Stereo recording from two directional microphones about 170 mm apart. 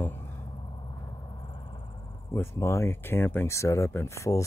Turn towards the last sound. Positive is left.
turn(degrees=20)  # may be behind; listen again after turning